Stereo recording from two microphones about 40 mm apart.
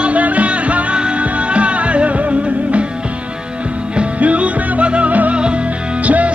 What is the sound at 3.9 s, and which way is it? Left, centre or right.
Music, right.